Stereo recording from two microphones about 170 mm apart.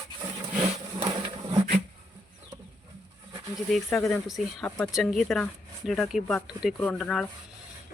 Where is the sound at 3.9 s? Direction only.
15° left (ahead or behind).